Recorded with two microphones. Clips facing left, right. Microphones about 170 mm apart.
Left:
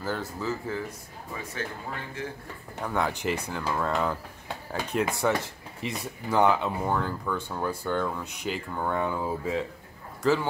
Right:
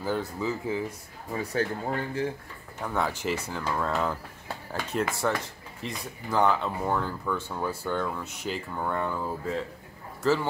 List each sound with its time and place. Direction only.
0.0 s speech: 15° right (ahead or behind)
1.3 s speech: 35° right (ahead or behind)
2.8 s speech: centre (ahead or behind)
10.2 s speech: 5° right (ahead or behind)